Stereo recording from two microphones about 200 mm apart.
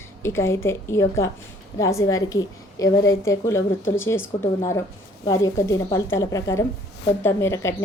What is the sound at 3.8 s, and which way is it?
Speech, 75° left (ahead or behind).